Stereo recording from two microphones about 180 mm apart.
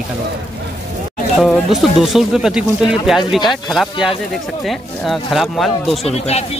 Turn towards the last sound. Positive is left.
turn(degrees=35)  # may be behind; listen again after turning